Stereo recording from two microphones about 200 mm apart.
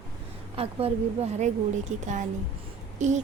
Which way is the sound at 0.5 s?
30° right (ahead or behind).